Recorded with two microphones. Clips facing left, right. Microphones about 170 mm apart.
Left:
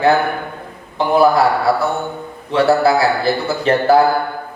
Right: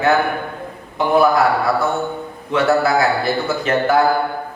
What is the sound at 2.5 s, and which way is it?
A man's voice, 30° left (ahead or behind).